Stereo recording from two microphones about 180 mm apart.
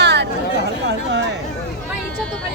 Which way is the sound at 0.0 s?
70° right (ahead or behind).